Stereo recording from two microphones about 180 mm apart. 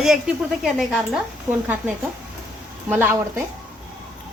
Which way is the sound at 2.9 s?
10° right (ahead or behind).